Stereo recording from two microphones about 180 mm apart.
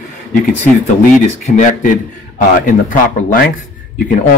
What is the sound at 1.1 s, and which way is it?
Speech, 40° left (ahead or behind).